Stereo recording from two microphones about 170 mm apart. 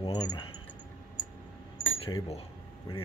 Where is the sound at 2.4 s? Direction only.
35° left (ahead or behind).